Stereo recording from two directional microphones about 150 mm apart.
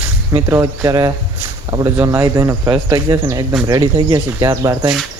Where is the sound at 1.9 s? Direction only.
15° right (ahead or behind).